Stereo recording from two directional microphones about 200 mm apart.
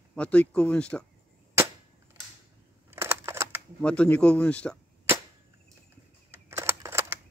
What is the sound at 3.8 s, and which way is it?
Speech, 5° left (ahead or behind).